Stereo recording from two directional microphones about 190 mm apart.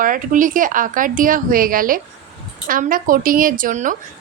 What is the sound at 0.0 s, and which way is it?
A woman's voice, 45° right (ahead or behind).